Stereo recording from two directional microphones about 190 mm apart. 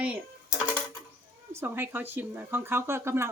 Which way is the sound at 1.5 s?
10° right (ahead or behind).